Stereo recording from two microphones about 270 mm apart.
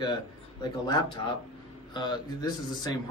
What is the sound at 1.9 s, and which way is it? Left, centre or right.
A man's voice, centre.